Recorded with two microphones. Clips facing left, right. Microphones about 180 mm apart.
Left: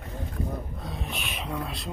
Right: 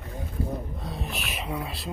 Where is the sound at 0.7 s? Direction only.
Centre (ahead or behind).